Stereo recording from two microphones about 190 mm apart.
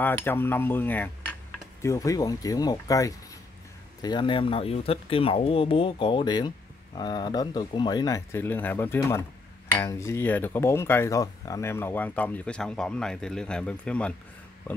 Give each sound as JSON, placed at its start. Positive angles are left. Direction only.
{"t": 0.0, "sound": "speech", "side_deg": 10}